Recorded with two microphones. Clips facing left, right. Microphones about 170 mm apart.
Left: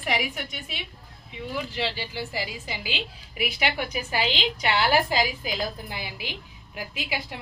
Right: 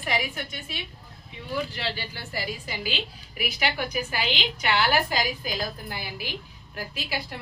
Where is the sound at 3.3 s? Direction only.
20° left (ahead or behind).